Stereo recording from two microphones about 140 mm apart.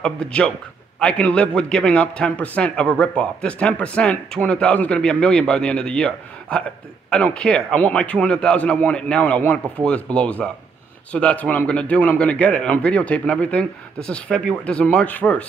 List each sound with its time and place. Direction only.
0.0 s speech: 5° left (ahead or behind)